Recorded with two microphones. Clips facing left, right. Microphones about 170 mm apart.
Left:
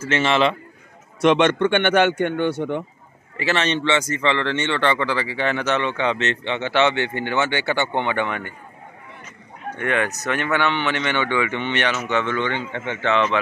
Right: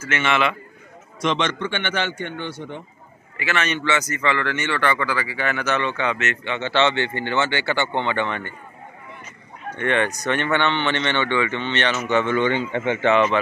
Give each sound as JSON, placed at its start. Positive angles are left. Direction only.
{"t": 0.0, "sound": "a man's voice", "side_deg": 30}
{"t": 1.2, "sound": "a man's voice", "side_deg": 55}
{"t": 3.3, "sound": "a man's voice", "side_deg": 30}
{"t": 9.8, "sound": "speech", "side_deg": 5}
{"t": 12.1, "sound": "speech", "side_deg": -5}